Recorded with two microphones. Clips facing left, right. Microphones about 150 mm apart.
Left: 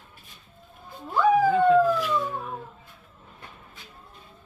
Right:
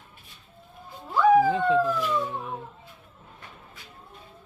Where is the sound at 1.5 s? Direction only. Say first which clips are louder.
Left 4 dB; 25° right (ahead or behind).